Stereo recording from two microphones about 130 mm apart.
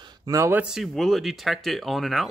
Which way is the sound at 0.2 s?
25° right (ahead or behind).